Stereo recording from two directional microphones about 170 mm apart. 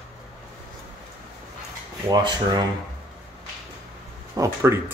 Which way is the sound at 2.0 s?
25° right (ahead or behind).